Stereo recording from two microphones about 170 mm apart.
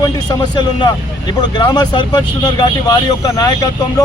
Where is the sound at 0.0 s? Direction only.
25° left (ahead or behind).